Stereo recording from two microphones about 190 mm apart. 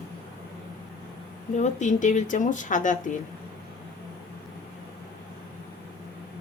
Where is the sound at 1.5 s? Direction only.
40° left (ahead or behind).